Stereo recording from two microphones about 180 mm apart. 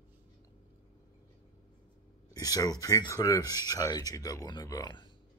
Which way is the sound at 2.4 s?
20° left (ahead or behind).